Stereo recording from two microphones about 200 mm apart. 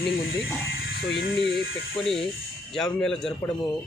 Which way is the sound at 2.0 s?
Centre (ahead or behind).